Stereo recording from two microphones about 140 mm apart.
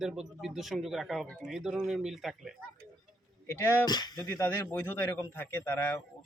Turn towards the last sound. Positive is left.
turn(degrees=15)  # may be behind; listen again after turning